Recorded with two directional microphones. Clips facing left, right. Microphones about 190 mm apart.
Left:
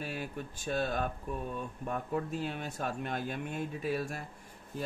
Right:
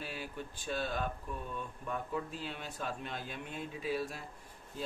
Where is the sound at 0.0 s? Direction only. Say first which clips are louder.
Left 4 dB; 50° left (ahead or behind).